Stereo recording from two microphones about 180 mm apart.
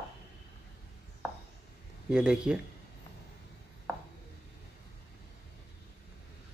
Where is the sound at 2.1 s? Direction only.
5° right (ahead or behind).